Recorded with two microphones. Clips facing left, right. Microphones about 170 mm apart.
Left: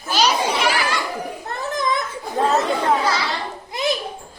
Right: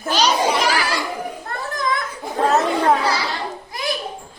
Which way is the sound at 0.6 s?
35° right (ahead or behind).